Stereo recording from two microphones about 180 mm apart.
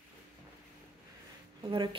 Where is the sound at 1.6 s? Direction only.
25° right (ahead or behind).